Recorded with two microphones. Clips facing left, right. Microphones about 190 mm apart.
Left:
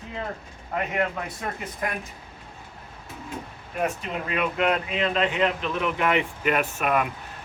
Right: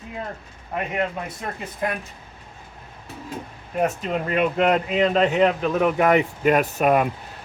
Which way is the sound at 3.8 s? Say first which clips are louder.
Right 4 dB; 40° right (ahead or behind).